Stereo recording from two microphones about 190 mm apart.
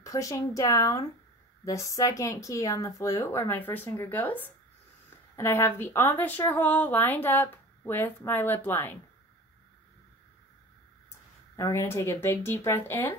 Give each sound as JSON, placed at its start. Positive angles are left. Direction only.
{"t": 0.0, "sound": "speech", "side_deg": 15}
{"t": 11.5, "sound": "speech", "side_deg": 15}